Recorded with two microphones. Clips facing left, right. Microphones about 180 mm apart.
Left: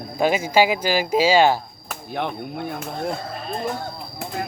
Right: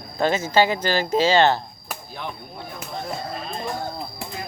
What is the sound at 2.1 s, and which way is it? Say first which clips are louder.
Speech: left 10 dB; 65° left (ahead or behind).